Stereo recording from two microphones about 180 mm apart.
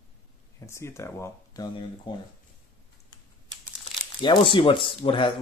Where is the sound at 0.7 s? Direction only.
15° left (ahead or behind).